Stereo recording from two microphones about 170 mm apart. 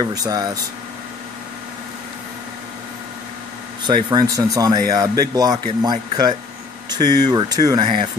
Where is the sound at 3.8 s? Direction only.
25° right (ahead or behind).